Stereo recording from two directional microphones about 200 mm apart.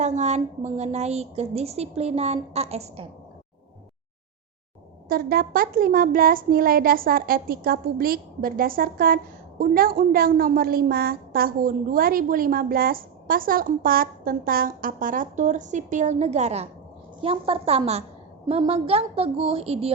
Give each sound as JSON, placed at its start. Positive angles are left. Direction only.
{"t": 0.0, "sound": "a woman's voice", "side_deg": -35}
{"t": 5.0, "sound": "a woman's voice", "side_deg": -50}